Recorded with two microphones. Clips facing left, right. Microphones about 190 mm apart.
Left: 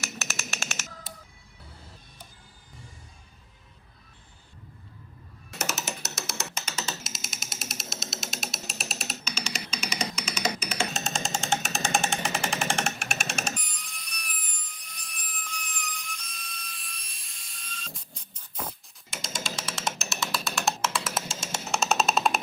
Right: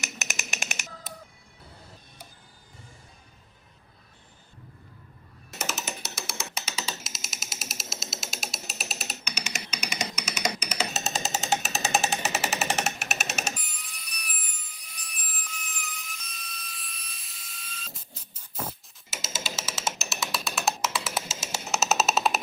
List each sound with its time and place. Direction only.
0.0 s a sound: 15° right (ahead or behind)
5.5 s music: centre (ahead or behind)
10.2 s music: 5° right (ahead or behind)